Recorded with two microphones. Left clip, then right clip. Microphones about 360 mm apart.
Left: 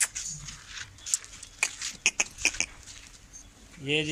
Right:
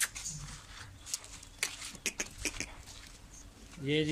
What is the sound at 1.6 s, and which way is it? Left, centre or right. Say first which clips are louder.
Beatboxing: left 10 dB; centre.